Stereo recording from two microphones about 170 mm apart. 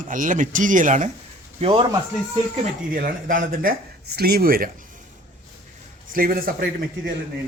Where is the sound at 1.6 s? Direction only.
30° right (ahead or behind).